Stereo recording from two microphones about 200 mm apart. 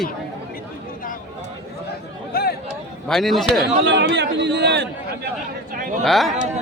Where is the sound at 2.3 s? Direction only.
50° left (ahead or behind).